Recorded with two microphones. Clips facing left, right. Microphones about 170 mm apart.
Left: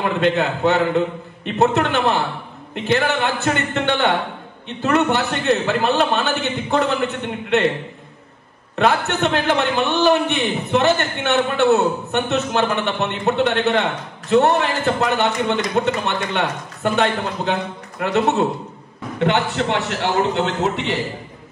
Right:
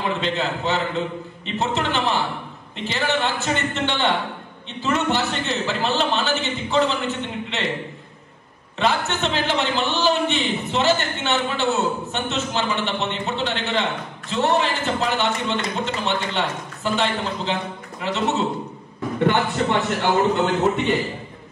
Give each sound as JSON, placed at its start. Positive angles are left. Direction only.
{"t": 0.2, "sound": "a man's voice", "side_deg": 60}
{"t": 8.7, "sound": "a man's voice", "side_deg": 60}